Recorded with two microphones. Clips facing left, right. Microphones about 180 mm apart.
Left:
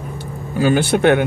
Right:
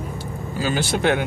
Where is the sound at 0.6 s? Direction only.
60° left (ahead or behind).